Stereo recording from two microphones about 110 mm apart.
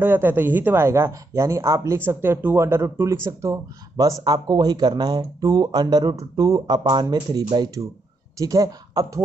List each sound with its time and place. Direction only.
0.0 s speech: 20° right (ahead or behind)